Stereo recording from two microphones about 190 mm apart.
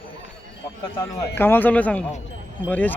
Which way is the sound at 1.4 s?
10° left (ahead or behind).